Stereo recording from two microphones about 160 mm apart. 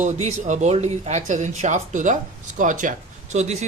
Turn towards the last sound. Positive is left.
turn(degrees=-45)  # may be behind; listen again after turning